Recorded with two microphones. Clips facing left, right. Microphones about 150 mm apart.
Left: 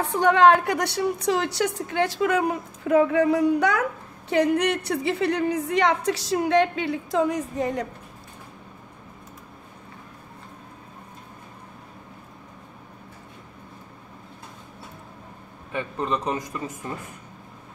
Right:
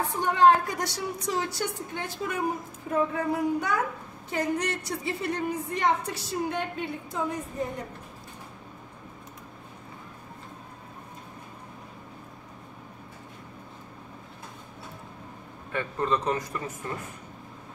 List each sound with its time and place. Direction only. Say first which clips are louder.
0.1 s a woman's voice: left 4 dB; 75° left (ahead or behind)
4.3 s a woman's voice: left 8 dB; 70° left (ahead or behind); by 7.8 s 90° left
15.7 s a man's voice: even; 15° left (ahead or behind)